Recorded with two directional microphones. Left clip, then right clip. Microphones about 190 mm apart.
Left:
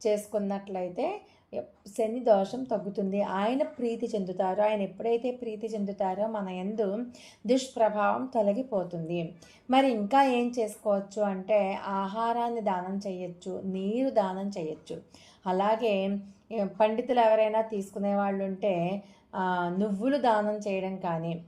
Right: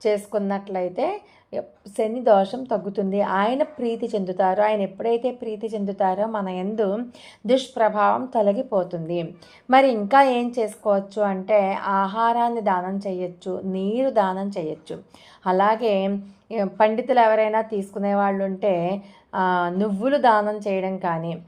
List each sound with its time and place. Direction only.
0.3 s a woman's voice: 20° right (ahead or behind)